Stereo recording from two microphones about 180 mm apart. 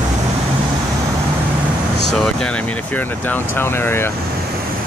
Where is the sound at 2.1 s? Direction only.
5° left (ahead or behind).